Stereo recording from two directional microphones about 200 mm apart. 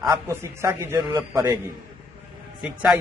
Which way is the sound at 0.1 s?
15° right (ahead or behind).